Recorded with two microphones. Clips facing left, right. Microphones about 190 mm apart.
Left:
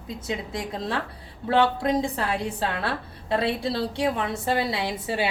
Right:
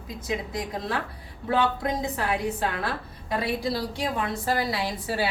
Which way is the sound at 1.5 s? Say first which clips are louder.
Left 3 dB; 30° left (ahead or behind).